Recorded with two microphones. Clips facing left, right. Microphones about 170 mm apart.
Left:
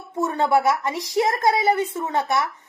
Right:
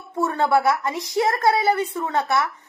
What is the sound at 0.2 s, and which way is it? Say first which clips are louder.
Speech: even; 20° left (ahead or behind).